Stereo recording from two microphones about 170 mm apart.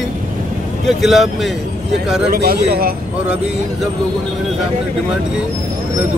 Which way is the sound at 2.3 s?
65° right (ahead or behind).